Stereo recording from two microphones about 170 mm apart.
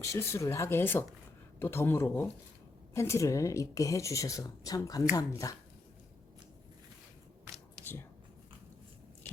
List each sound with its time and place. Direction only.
0.0 s a woman's voice: 15° left (ahead or behind)